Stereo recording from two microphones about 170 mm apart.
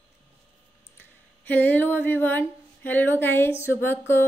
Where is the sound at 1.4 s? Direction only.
10° left (ahead or behind).